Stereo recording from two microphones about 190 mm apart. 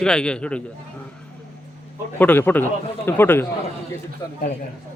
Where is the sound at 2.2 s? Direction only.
10° left (ahead or behind).